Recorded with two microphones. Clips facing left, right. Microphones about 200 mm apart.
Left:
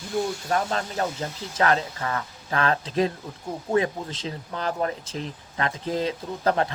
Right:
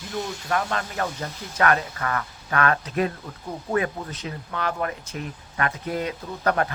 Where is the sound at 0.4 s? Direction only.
30° left (ahead or behind).